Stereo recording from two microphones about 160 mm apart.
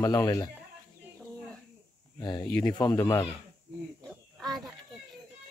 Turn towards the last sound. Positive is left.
turn(degrees=0)  # may be behind; listen again after turning